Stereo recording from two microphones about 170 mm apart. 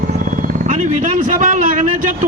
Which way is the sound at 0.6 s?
45° right (ahead or behind).